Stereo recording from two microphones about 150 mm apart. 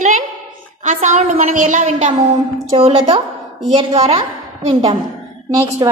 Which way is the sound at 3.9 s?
45° right (ahead or behind).